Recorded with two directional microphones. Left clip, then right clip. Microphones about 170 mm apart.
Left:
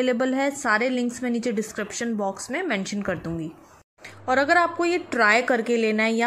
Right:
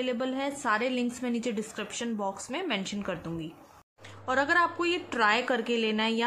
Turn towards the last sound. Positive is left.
turn(degrees=15)  # may be behind; listen again after turning